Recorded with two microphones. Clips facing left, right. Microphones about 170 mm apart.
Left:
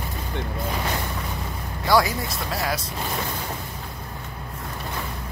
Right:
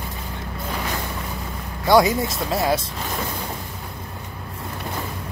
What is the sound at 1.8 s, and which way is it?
Speech, 20° right (ahead or behind).